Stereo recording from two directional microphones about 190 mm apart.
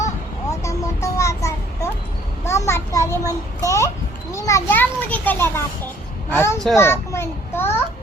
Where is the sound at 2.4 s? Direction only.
15° left (ahead or behind).